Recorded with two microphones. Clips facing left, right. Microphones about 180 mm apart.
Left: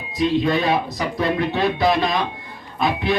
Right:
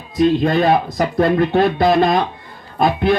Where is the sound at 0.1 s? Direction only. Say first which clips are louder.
Right 4 dB; 50° right (ahead or behind).